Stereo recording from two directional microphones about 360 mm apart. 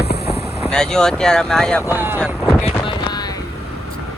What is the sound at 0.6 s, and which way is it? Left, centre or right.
Speech, centre.